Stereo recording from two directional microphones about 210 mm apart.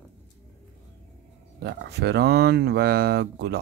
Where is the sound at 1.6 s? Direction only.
50° right (ahead or behind).